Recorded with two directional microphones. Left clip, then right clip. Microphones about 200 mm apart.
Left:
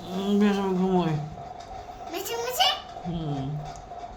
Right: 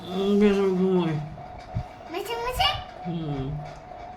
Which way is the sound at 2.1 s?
60° left (ahead or behind).